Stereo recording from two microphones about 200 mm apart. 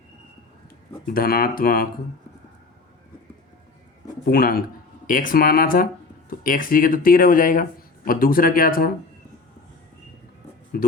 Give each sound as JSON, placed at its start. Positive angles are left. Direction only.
{"t": 1.1, "sound": "speech", "side_deg": 50}
{"t": 4.3, "sound": "speech", "side_deg": 50}